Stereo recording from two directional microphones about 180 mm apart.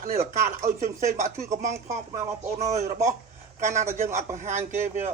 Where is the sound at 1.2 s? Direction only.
15° right (ahead or behind).